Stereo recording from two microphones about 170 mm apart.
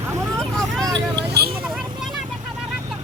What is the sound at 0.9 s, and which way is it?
Vehicle, 75° right (ahead or behind).